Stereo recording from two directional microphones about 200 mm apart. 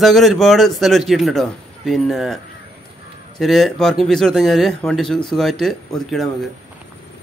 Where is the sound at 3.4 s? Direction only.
Centre (ahead or behind).